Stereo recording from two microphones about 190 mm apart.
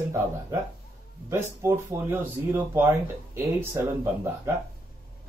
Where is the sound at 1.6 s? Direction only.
15° right (ahead or behind).